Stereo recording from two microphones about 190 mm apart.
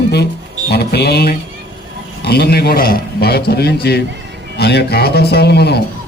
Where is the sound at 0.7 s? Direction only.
55° left (ahead or behind).